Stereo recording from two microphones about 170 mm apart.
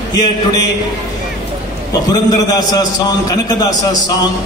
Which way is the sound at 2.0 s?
20° left (ahead or behind).